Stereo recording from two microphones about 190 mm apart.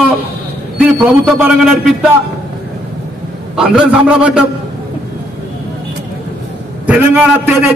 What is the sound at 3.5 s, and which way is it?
Speech, 5° right (ahead or behind).